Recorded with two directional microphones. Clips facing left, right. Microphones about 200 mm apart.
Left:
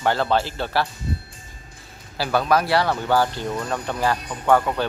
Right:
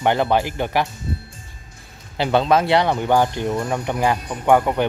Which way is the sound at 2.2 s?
25° right (ahead or behind).